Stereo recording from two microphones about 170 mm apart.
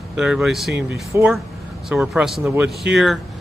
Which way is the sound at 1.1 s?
15° right (ahead or behind).